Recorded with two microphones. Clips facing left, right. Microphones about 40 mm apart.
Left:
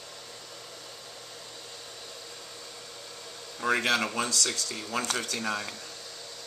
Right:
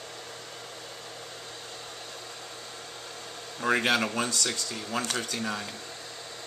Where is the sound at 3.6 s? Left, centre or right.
Right.